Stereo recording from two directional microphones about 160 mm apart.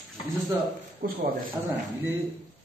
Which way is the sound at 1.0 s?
70° right (ahead or behind).